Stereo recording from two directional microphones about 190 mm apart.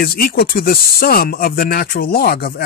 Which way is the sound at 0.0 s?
50° left (ahead or behind).